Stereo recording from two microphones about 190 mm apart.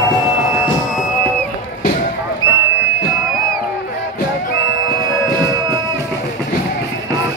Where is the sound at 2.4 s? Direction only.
15° right (ahead or behind).